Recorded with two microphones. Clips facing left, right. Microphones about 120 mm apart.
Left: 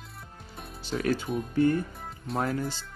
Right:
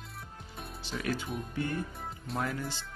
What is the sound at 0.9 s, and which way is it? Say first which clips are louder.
Speech: left 7 dB; 45° left (ahead or behind).